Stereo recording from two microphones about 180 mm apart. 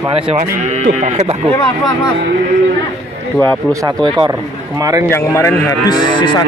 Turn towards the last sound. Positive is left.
turn(degrees=20)  # may be behind; listen again after turning